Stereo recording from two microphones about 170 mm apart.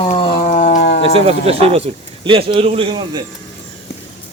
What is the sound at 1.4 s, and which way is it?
A man's voice, 35° right (ahead or behind).